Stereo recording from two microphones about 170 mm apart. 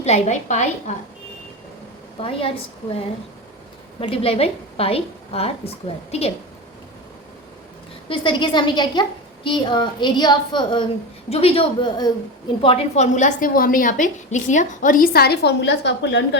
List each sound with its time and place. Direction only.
0.0 s a woman's voice: 40° left (ahead or behind)
2.1 s a woman's voice: 35° left (ahead or behind)
4.0 s a woman's voice: 35° left (ahead or behind)
8.1 s a woman's voice: 30° left (ahead or behind); by 16.4 s 90° left